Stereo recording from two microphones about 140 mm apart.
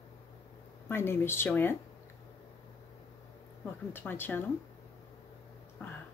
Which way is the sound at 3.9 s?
15° left (ahead or behind).